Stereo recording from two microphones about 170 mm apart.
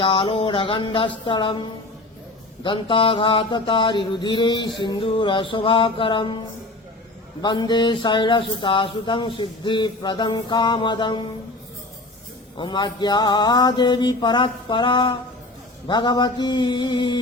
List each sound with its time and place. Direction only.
0.0 s speech: 30° left (ahead or behind)
2.6 s speech: 30° left (ahead or behind)
7.4 s speech: 25° left (ahead or behind)
12.5 s speech: 25° left (ahead or behind)